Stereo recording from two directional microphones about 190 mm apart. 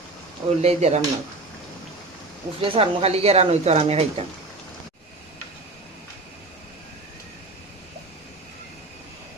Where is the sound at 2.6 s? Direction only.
30° right (ahead or behind).